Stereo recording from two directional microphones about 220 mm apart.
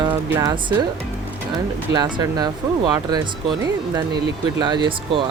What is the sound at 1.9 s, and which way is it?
Speech, 20° right (ahead or behind).